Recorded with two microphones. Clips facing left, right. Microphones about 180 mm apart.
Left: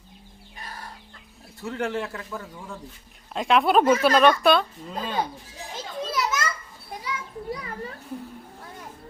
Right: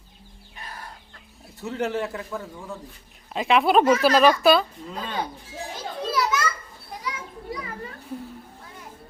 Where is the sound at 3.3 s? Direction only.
Centre (ahead or behind).